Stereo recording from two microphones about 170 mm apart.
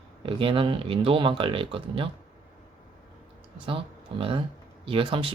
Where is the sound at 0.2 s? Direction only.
30° right (ahead or behind).